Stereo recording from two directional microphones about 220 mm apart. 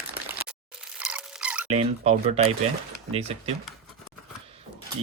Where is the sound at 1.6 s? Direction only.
30° right (ahead or behind).